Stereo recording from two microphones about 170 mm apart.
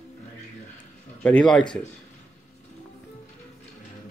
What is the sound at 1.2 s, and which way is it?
Speech, 5° left (ahead or behind).